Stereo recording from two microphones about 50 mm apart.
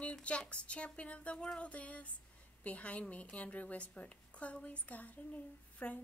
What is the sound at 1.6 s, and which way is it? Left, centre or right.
A woman's voice, left.